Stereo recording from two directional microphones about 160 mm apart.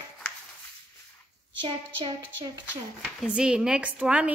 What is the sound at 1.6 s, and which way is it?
Speech, 30° right (ahead or behind).